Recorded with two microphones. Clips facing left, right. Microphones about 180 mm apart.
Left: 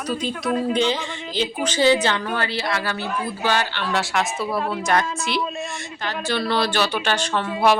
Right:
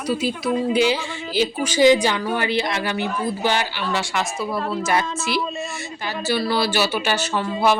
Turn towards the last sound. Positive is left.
turn(degrees=0)  # may be behind; listen again after turning